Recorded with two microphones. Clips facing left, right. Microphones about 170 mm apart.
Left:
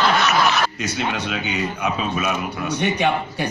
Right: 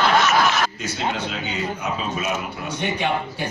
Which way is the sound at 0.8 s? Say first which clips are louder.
Left 1 dB; 70° left (ahead or behind).